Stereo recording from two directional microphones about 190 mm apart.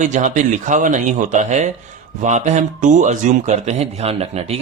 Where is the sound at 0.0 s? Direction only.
40° right (ahead or behind).